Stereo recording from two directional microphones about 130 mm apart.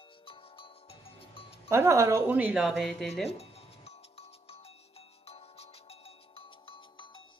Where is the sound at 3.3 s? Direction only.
50° left (ahead or behind).